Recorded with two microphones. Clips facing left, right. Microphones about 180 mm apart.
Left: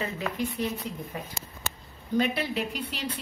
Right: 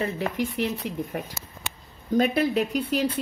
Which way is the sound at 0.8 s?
70° right (ahead or behind).